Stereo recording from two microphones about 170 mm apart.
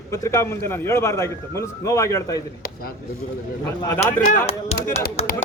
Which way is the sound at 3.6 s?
15° left (ahead or behind).